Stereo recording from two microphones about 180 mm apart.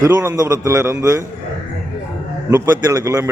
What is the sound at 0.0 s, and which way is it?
Speech, 15° right (ahead or behind).